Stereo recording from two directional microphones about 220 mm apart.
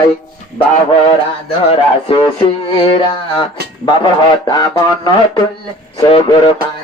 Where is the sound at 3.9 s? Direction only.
20° left (ahead or behind).